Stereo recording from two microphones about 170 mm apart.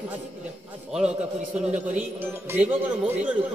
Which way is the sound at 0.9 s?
5° right (ahead or behind).